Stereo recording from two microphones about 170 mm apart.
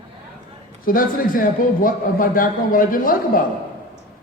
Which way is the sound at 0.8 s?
55° left (ahead or behind).